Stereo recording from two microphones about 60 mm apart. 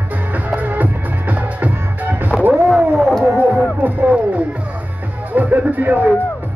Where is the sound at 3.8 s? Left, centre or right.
Right.